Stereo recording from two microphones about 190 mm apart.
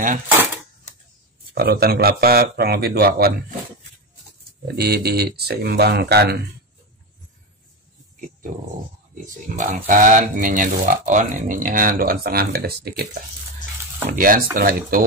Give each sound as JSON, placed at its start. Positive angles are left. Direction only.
{"t": 1.5, "sound": "speech", "side_deg": -55}
{"t": 4.7, "sound": "speech", "side_deg": -60}
{"t": 9.6, "sound": "speech", "side_deg": -45}